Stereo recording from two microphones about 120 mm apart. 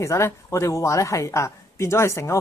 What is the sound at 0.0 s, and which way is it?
Speech, 25° left (ahead or behind).